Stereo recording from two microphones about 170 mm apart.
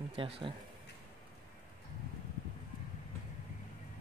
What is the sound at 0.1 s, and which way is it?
Speech, 30° right (ahead or behind).